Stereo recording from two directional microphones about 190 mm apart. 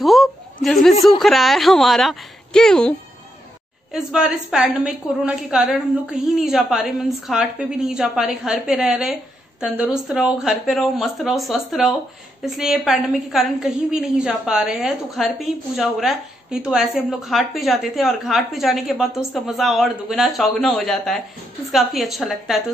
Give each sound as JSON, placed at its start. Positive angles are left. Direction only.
{"t": 0.0, "sound": "a sound", "side_deg": 0}
{"t": 1.2, "sound": "a woman's voice", "side_deg": 0}
{"t": 3.9, "sound": "a woman's voice", "side_deg": -5}